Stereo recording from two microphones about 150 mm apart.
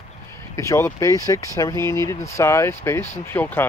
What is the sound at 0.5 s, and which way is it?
Speech, 20° left (ahead or behind).